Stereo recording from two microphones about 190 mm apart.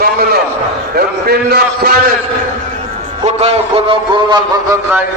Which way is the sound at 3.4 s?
35° right (ahead or behind).